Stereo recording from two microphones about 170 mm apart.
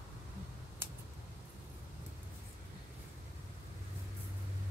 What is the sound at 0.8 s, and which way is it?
Scissors, 15° right (ahead or behind).